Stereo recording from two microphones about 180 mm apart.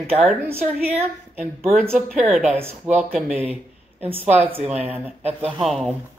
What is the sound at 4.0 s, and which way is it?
Speech, 35° right (ahead or behind).